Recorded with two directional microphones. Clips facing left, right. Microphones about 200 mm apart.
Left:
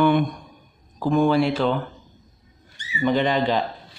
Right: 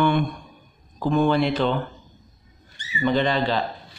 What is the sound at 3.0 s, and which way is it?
Speech, 15° left (ahead or behind).